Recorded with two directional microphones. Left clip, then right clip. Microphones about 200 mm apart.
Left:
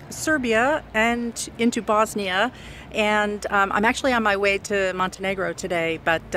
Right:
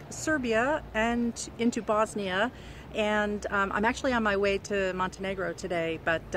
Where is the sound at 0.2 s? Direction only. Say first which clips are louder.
Left 7 dB; 25° left (ahead or behind).